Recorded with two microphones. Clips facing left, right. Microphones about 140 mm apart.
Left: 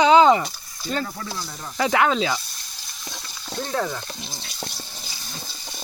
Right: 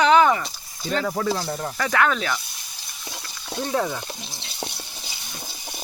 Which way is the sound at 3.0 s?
10° right (ahead or behind).